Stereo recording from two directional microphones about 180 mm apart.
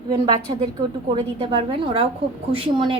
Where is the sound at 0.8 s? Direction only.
25° right (ahead or behind).